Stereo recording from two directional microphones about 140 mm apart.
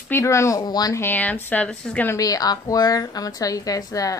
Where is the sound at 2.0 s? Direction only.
25° left (ahead or behind).